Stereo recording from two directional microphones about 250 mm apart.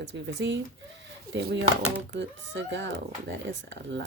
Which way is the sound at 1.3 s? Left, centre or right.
Right.